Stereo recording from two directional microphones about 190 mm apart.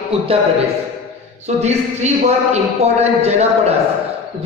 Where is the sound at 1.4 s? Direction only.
35° right (ahead or behind).